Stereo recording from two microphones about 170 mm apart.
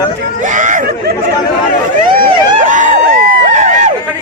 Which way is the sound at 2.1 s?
55° right (ahead or behind).